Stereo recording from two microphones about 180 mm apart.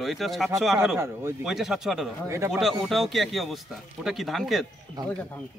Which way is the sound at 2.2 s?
15° right (ahead or behind).